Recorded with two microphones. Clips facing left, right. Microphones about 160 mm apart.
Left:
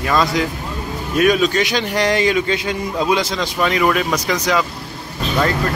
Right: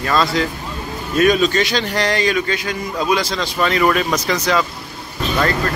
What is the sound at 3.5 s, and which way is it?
Speech, 10° left (ahead or behind).